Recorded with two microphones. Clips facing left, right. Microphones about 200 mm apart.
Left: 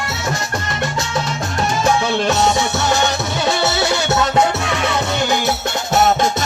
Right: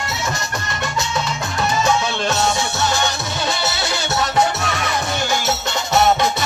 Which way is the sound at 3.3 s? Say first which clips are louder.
Left 5 dB; 60° left (ahead or behind).